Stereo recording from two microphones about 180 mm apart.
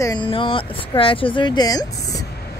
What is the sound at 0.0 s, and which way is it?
Speech, 25° left (ahead or behind).